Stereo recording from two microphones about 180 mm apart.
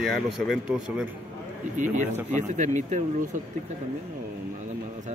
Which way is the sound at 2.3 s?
40° right (ahead or behind).